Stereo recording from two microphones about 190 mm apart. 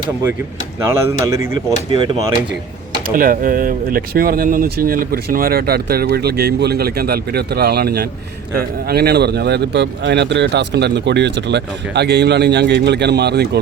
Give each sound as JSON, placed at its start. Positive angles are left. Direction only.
{"t": 0.9, "sound": "speech", "side_deg": -15}
{"t": 3.1, "sound": "speech", "side_deg": -50}